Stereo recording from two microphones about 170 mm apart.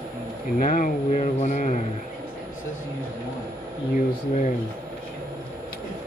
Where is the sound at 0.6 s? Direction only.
50° left (ahead or behind).